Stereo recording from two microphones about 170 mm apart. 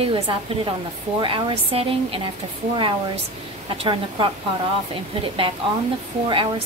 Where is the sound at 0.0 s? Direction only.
30° right (ahead or behind).